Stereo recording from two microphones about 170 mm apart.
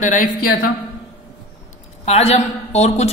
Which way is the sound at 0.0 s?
50° left (ahead or behind).